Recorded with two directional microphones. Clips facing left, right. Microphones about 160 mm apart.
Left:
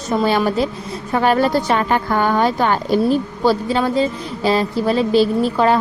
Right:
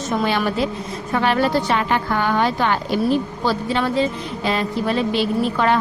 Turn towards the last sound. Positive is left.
turn(degrees=35)  # may be behind; listen again after turning